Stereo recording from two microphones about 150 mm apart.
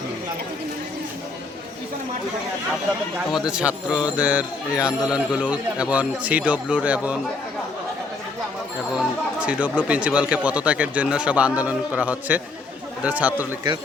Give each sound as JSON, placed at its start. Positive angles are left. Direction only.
{"t": 3.3, "sound": "a man's voice", "side_deg": -5}
{"t": 9.0, "sound": "speech", "side_deg": -10}